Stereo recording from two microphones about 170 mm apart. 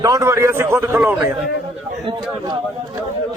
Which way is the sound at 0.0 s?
20° right (ahead or behind).